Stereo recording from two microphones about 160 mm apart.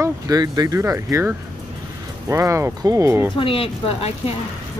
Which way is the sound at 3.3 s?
35° left (ahead or behind).